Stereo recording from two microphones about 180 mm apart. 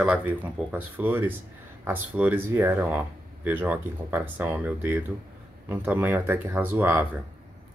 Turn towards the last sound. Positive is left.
turn(degrees=-10)  # may be behind; listen again after turning